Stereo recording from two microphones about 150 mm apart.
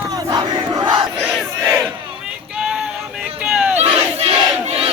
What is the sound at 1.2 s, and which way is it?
Crowd, 5° right (ahead or behind).